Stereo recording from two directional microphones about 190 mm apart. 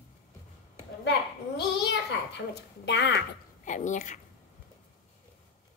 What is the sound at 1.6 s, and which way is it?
Babbling, 60° left (ahead or behind).